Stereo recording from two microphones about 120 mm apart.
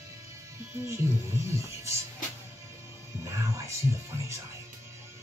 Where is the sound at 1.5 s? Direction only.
25° right (ahead or behind).